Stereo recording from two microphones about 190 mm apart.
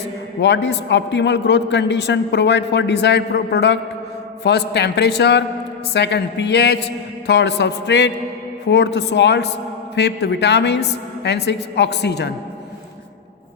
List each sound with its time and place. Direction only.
0.3 s a man's voice: 65° left (ahead or behind)